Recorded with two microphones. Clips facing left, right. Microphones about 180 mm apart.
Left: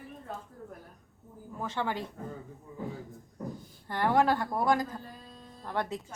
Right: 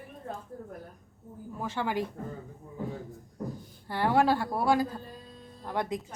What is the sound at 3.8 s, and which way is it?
A woman's voice, 10° right (ahead or behind).